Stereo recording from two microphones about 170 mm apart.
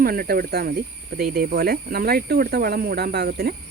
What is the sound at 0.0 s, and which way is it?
Speech, 60° right (ahead or behind).